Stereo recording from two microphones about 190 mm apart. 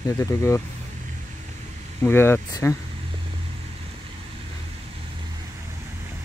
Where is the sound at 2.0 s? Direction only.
10° left (ahead or behind).